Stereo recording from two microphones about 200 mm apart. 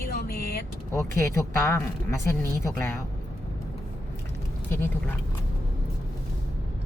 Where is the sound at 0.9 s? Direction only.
15° left (ahead or behind).